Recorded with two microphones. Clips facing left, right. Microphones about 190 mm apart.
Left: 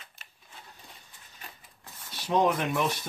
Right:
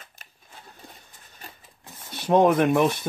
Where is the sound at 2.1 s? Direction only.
55° right (ahead or behind).